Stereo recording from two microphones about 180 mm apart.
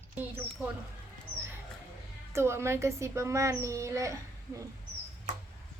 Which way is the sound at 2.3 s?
15° right (ahead or behind).